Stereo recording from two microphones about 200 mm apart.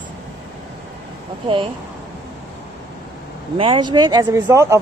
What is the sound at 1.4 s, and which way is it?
Speech, 25° right (ahead or behind).